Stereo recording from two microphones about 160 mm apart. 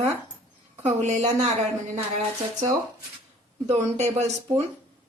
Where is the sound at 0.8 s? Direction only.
45° right (ahead or behind).